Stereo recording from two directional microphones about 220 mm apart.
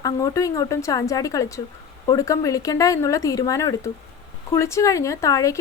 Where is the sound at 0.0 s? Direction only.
15° left (ahead or behind).